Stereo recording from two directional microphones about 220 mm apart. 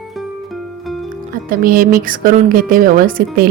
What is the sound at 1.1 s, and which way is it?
Speech, 40° right (ahead or behind).